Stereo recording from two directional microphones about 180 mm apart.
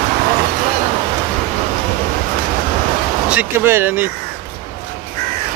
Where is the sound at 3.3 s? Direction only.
10° right (ahead or behind).